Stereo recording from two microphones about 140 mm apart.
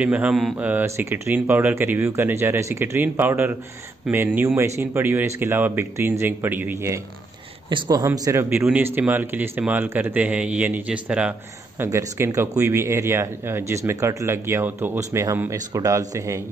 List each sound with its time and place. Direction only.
0.0 s a man's voice: 10° right (ahead or behind)
0.7 s a man's voice: 15° right (ahead or behind)
7.7 s a man's voice: 25° right (ahead or behind); by 11.3 s 10° right (ahead or behind)
11.8 s speech: 20° right (ahead or behind)